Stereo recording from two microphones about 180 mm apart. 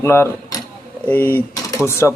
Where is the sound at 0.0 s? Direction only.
15° left (ahead or behind).